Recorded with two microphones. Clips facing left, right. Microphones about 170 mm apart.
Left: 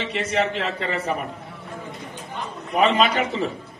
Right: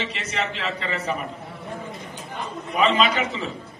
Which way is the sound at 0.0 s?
50° left (ahead or behind).